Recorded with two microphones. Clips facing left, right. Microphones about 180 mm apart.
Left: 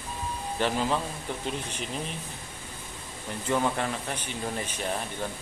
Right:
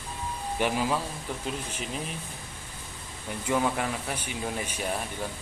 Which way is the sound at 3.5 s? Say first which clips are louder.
Even; 5° right (ahead or behind).